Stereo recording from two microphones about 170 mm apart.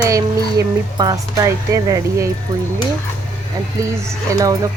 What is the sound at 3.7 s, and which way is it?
Speech, 15° right (ahead or behind).